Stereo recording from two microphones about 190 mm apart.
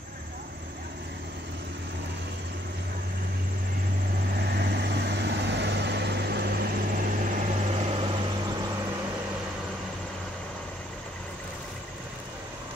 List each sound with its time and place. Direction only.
4.4 s vehicle: 60° right (ahead or behind); by 8.1 s 30° right (ahead or behind)